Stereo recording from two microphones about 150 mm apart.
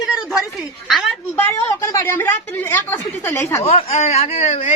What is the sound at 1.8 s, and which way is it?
A woman's voice, 20° left (ahead or behind).